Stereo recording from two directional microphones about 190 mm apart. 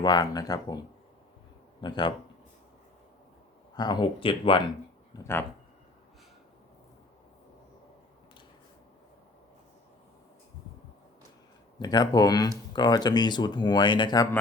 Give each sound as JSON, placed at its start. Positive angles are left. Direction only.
{"t": 0.0, "sound": "speech", "side_deg": 20}
{"t": 3.8, "sound": "speech", "side_deg": 20}
{"t": 5.1, "sound": "speech", "side_deg": 15}
{"t": 11.8, "sound": "speech", "side_deg": 20}